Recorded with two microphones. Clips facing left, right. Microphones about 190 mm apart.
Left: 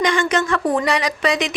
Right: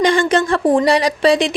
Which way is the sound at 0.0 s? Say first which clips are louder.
Right 4 dB; 30° right (ahead or behind).